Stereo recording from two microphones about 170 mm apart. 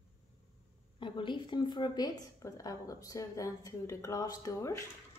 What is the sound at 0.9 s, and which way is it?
A woman's voice, 30° left (ahead or behind).